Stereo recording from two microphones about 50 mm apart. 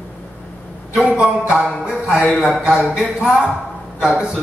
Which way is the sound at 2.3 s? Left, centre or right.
Centre.